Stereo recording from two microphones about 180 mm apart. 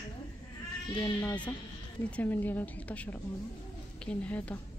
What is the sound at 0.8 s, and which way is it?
Speech, 25° left (ahead or behind).